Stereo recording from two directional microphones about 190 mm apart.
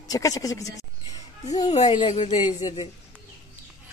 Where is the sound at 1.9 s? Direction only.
25° left (ahead or behind).